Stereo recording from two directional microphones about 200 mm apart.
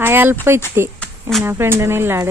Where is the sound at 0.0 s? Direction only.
10° right (ahead or behind).